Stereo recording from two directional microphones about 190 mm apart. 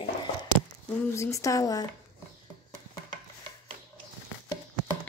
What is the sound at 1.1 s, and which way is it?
Speech, 15° left (ahead or behind).